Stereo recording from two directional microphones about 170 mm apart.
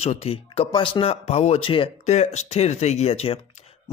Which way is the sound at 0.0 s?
35° left (ahead or behind).